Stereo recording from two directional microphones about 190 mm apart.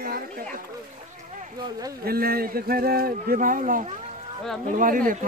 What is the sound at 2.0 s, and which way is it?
A man's voice, 50° right (ahead or behind).